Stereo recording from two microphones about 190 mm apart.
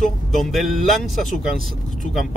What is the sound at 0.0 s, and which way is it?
Speech, centre (ahead or behind).